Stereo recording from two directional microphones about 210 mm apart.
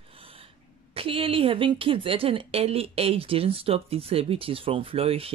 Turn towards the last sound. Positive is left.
turn(degrees=-25)  # may be behind; listen again after turning